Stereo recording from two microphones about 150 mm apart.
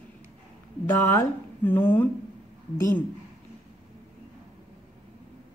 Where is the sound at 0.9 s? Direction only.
10° left (ahead or behind).